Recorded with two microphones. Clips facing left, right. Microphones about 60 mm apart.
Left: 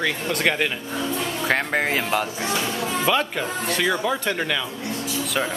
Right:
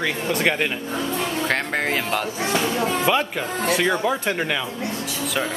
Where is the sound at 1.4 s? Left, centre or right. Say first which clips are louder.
Left 4 dB; centre.